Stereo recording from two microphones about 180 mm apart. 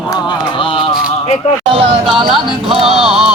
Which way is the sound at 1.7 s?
30° right (ahead or behind).